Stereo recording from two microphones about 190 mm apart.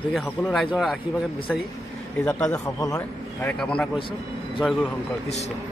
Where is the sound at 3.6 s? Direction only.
5° left (ahead or behind).